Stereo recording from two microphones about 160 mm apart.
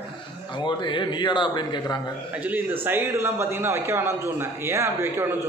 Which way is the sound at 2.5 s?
10° right (ahead or behind).